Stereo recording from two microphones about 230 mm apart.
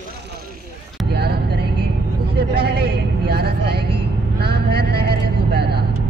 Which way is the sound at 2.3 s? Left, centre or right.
Right.